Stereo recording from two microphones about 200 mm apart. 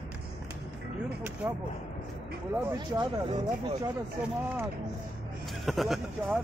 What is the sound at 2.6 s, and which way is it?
Speech, 15° right (ahead or behind).